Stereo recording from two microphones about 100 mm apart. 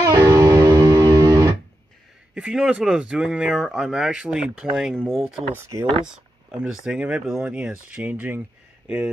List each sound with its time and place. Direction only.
0.0 s music: 30° right (ahead or behind)
2.3 s speech: 10° right (ahead or behind)
5.5 s speech: 25° right (ahead or behind)
6.0 s speech: 10° right (ahead or behind)